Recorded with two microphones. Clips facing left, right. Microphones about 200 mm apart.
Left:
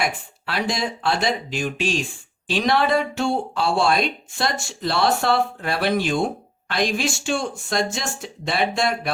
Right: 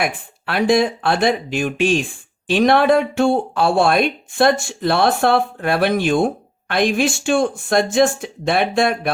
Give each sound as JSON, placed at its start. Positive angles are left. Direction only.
{"t": 0.0, "sound": "speech", "side_deg": -55}